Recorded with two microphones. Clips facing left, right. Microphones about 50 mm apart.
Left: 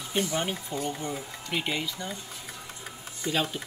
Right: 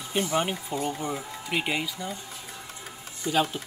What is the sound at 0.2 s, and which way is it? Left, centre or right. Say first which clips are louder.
Speech: right 3 dB; centre.